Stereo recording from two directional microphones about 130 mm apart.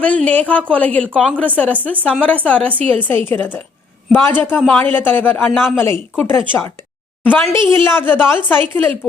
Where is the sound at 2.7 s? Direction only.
45° right (ahead or behind).